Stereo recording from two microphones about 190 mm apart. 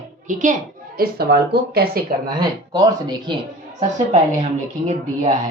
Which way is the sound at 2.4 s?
20° right (ahead or behind).